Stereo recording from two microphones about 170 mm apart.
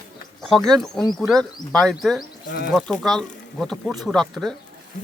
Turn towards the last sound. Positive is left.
turn(degrees=0)  # may be behind; listen again after turning